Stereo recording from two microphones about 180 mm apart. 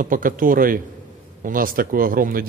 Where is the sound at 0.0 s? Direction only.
50° right (ahead or behind).